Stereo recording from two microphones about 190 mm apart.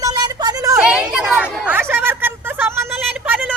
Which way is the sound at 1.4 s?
5° left (ahead or behind).